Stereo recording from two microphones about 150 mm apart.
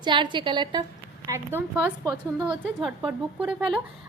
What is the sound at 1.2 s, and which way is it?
Speech, 20° right (ahead or behind).